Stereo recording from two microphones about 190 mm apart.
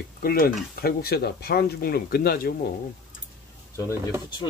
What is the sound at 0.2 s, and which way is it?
Speech, 50° left (ahead or behind).